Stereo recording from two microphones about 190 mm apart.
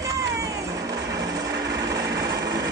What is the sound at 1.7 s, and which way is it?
Light engine, 20° right (ahead or behind).